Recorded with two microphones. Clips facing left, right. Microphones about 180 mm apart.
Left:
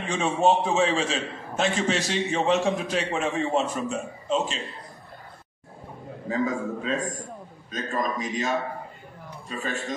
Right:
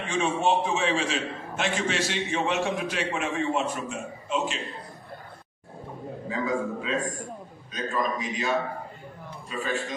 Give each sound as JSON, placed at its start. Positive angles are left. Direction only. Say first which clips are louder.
{"t": 0.1, "sound": "a man's voice", "louder": "left 3 dB", "side_deg": 40}
{"t": 6.2, "sound": "a man's voice", "louder": "left 2 dB", "side_deg": 45}
{"t": 9.5, "sound": "a man's voice", "louder": "even", "side_deg": 45}